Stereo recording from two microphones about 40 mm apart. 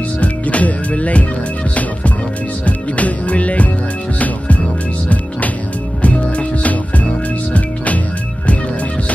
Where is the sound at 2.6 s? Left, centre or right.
Left.